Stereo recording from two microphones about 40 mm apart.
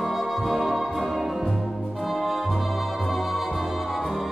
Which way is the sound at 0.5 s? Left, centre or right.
Centre.